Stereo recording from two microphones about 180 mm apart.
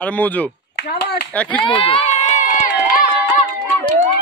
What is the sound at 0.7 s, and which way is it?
Speech, 60° left (ahead or behind).